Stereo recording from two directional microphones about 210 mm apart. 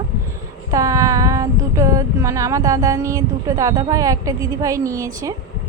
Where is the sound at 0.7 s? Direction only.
15° right (ahead or behind).